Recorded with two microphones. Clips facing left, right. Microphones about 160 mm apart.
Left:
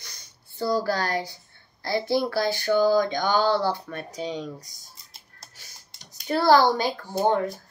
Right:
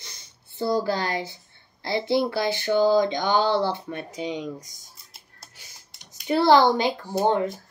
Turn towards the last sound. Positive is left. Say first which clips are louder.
# right 1 dB
turn(degrees=-20)  # may be behind; listen again after turning